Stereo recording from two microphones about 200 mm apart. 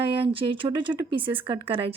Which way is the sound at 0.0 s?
25° right (ahead or behind).